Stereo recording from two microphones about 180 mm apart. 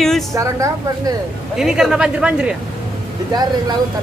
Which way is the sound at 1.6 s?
5° right (ahead or behind).